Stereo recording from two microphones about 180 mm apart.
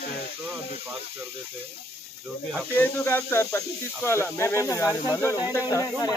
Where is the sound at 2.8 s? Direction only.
10° left (ahead or behind).